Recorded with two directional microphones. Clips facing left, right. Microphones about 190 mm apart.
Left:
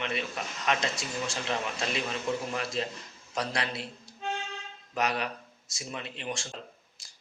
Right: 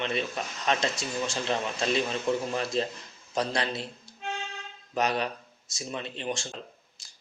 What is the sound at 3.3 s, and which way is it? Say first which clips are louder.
Speech: right 4 dB; 25° right (ahead or behind).